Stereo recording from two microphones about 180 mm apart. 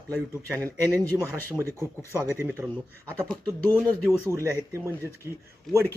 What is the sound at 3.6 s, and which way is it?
Speech, 10° left (ahead or behind).